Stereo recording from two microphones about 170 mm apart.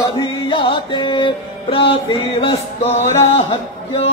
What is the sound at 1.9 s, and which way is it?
Music, 40° left (ahead or behind).